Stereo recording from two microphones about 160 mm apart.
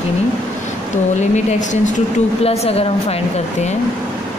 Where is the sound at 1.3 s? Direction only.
50° left (ahead or behind).